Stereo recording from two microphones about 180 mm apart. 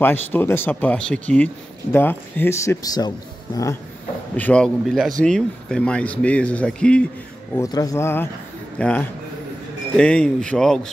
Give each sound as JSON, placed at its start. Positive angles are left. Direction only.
{"t": 0.0, "sound": "speech", "side_deg": 10}
{"t": 4.4, "sound": "speech", "side_deg": 5}
{"t": 7.5, "sound": "a man's voice", "side_deg": 20}